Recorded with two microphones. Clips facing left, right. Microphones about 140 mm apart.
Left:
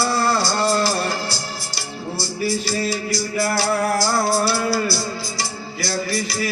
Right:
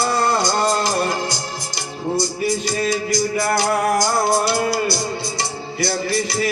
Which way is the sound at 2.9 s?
20° right (ahead or behind).